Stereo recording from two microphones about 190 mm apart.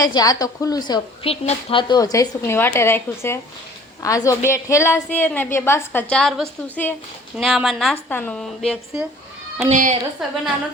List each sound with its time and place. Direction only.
0.0 s a woman's voice: 20° left (ahead or behind); by 8.8 s 5° left (ahead or behind)
9.6 s a woman's voice: 40° right (ahead or behind)